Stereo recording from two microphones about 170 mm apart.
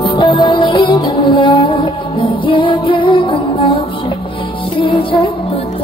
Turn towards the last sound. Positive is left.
turn(degrees=30)  # may be behind; listen again after turning